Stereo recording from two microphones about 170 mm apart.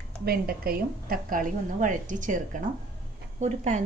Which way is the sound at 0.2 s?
60° right (ahead or behind).